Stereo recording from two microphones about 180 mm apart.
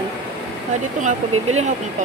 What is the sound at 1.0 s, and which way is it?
Speech, 40° right (ahead or behind).